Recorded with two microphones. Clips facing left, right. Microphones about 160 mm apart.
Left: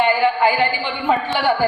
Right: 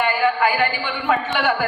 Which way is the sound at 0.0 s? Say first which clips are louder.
Left 3 dB; 25° left (ahead or behind).